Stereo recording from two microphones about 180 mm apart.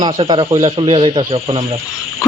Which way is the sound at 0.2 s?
30° right (ahead or behind).